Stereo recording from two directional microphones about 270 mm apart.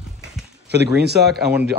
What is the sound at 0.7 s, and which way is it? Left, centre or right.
Speech, right.